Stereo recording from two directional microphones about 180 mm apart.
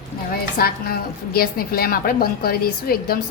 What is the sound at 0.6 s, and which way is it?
A woman's voice, 60° left (ahead or behind).